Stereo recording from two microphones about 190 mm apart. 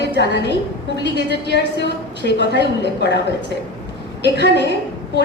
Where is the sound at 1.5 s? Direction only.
65° left (ahead or behind).